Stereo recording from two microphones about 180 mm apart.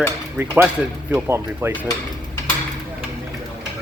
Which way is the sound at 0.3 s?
10° right (ahead or behind).